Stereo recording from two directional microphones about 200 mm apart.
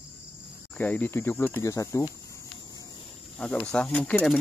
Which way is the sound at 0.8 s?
5° left (ahead or behind).